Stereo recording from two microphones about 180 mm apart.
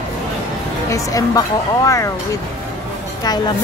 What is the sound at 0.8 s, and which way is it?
Speech, 20° left (ahead or behind).